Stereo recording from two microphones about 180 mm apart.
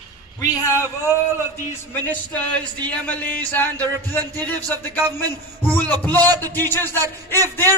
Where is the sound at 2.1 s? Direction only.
10° left (ahead or behind).